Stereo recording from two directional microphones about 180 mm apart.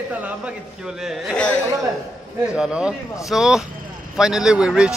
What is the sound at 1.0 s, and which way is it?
Speech, centre (ahead or behind).